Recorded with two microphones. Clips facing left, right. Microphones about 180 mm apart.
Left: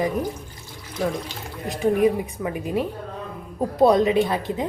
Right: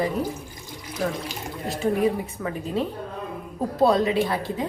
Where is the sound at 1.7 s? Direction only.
15° left (ahead or behind).